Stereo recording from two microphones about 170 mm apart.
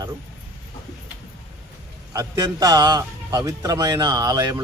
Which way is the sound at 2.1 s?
20° right (ahead or behind).